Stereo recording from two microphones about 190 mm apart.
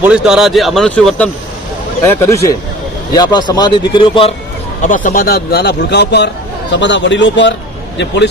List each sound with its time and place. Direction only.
0.0 s a man's voice: 5° right (ahead or behind); by 4.4 s 30° left (ahead or behind)
4.8 s a man's voice: 40° left (ahead or behind); by 8.3 s 65° left (ahead or behind)